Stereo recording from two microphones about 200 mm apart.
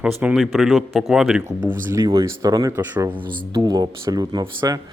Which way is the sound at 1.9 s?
15° right (ahead or behind).